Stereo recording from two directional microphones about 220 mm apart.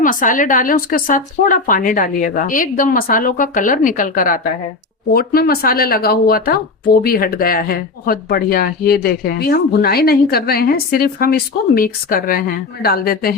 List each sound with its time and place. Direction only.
0.0 s speech: 35° left (ahead or behind)